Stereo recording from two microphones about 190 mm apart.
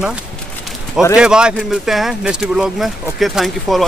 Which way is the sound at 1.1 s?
5° right (ahead or behind).